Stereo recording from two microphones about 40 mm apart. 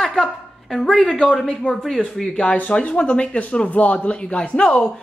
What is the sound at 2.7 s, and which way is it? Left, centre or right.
Speech, left.